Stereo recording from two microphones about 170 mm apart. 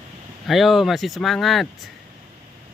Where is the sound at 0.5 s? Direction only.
Centre (ahead or behind).